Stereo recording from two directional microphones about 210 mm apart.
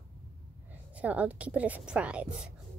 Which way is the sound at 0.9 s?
5° right (ahead or behind).